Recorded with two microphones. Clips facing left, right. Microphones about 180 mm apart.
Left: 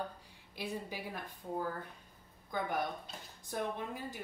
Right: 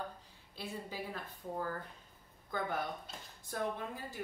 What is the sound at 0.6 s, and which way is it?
Speech, 15° left (ahead or behind).